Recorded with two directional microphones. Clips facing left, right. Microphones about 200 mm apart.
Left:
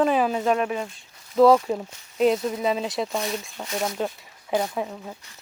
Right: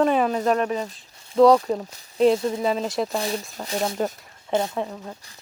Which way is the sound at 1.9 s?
35° right (ahead or behind).